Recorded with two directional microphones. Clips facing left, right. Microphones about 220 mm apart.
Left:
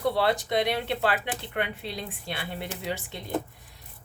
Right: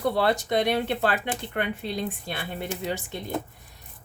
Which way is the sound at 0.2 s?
45° right (ahead or behind).